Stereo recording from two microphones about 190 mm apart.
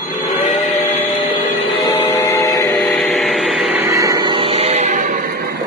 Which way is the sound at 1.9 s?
15° left (ahead or behind).